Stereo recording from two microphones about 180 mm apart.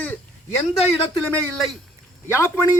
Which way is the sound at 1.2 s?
5° left (ahead or behind).